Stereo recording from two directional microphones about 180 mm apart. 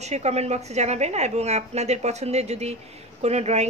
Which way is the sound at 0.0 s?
40° right (ahead or behind).